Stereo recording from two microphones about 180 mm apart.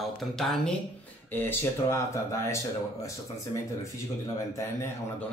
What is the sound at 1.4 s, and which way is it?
Speech, 10° left (ahead or behind).